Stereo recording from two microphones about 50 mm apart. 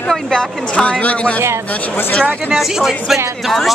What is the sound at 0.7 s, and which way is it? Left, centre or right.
Speech, left.